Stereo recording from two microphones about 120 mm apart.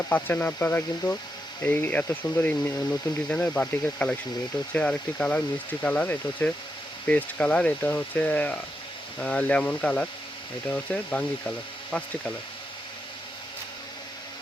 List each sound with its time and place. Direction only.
0.1 s speech: 15° left (ahead or behind)